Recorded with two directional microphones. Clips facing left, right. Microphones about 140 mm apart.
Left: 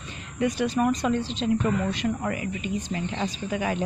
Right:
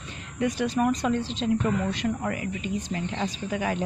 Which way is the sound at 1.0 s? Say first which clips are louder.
Left 1 dB; 15° left (ahead or behind).